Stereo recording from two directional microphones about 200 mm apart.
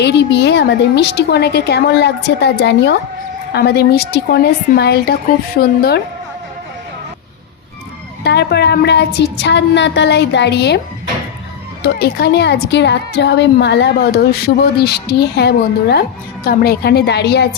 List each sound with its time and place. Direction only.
0.0 s a woman's voice: 60° left (ahead or behind)
8.2 s a woman's voice: 55° left (ahead or behind)
11.9 s a woman's voice: 55° left (ahead or behind)